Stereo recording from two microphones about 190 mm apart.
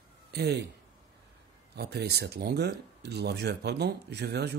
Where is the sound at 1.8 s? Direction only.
60° right (ahead or behind).